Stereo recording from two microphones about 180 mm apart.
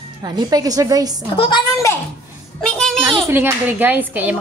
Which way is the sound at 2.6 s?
5° left (ahead or behind).